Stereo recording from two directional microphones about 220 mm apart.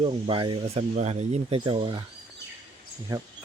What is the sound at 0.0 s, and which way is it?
Speech, 25° right (ahead or behind).